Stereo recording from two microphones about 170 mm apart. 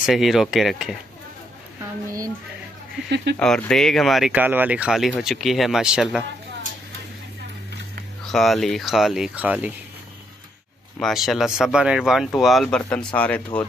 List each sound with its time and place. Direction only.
0.0 s speech: centre (ahead or behind)
3.3 s speech: 5° left (ahead or behind)
8.3 s speech: centre (ahead or behind)
11.0 s speech: centre (ahead or behind)